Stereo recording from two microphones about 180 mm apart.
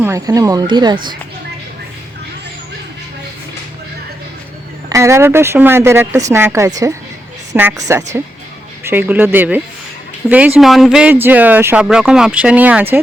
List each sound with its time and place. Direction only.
0.0 s speech: 15° right (ahead or behind)
4.9 s speech: 15° right (ahead or behind)